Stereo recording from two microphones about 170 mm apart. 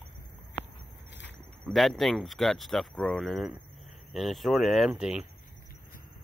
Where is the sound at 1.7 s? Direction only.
Centre (ahead or behind).